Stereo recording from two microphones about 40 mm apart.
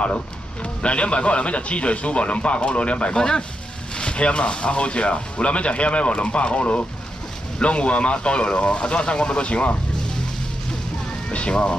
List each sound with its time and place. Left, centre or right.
0.8 s speech: left
3.2 s speech: centre
11.2 s speech: left